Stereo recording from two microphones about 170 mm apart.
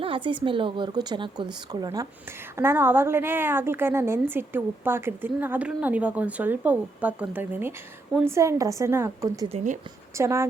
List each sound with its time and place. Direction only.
0.0 s a woman's voice: 30° right (ahead or behind)